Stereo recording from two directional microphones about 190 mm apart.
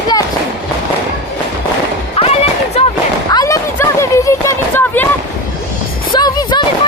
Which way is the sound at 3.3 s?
15° left (ahead or behind).